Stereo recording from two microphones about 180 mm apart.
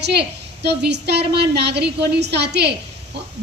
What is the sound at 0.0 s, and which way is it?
A woman's voice, 65° right (ahead or behind).